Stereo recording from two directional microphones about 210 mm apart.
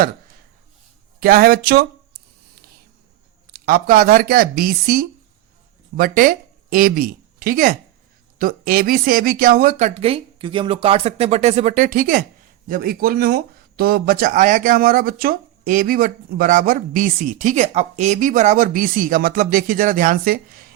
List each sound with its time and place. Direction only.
1.2 s speech: 45° right (ahead or behind)
3.5 s speech: 45° right (ahead or behind)